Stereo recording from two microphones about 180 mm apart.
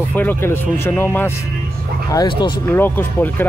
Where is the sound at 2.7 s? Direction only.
10° left (ahead or behind).